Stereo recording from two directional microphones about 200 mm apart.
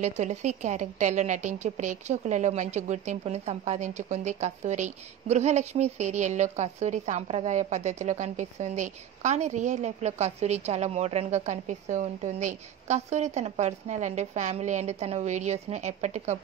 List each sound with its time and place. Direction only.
0.0 s a woman's voice: 35° right (ahead or behind)